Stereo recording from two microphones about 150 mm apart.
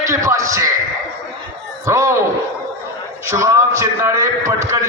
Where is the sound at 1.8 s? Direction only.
20° right (ahead or behind).